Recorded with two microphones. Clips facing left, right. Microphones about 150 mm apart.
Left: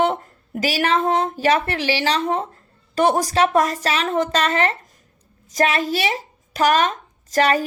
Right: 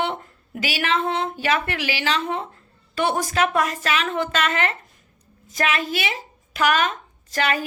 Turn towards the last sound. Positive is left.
turn(degrees=40)  # may be behind; listen again after turning